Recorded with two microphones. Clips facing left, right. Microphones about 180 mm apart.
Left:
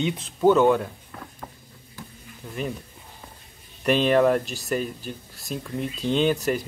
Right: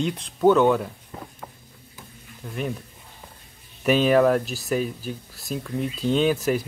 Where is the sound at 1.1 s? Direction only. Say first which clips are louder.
Right 4 dB; 25° right (ahead or behind).